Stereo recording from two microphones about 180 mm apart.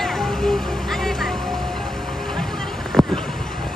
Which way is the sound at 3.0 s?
Centre (ahead or behind).